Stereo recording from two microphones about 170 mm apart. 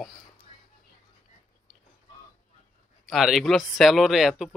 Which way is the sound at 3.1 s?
Centre (ahead or behind).